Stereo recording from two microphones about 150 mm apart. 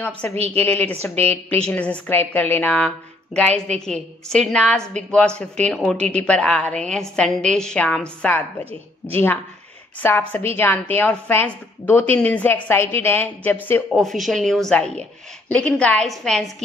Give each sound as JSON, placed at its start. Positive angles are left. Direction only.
{"t": 0.5, "sound": "a woman's voice", "side_deg": 10}
{"t": 13.9, "sound": "a woman's voice", "side_deg": 0}